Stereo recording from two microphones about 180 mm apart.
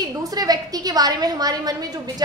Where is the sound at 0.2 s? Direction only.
20° right (ahead or behind).